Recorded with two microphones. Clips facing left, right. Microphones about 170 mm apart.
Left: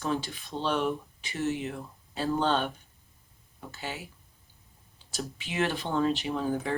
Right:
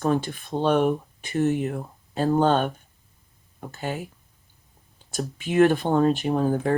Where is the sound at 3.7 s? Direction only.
50° right (ahead or behind).